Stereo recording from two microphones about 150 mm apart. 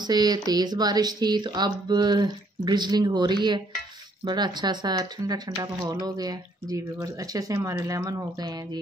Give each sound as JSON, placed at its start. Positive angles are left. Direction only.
{"t": 0.0, "sound": "speech", "side_deg": -25}